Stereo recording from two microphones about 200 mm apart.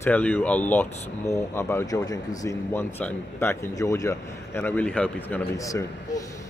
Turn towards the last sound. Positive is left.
turn(degrees=15)  # may be behind; listen again after turning